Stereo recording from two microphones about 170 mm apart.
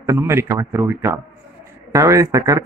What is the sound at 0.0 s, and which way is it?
Speech, 15° right (ahead or behind).